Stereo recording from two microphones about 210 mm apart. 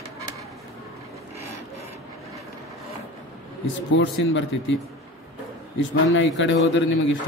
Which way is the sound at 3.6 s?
65° left (ahead or behind).